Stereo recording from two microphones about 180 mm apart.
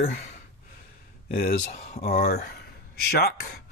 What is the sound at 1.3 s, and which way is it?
Speech, 55° left (ahead or behind).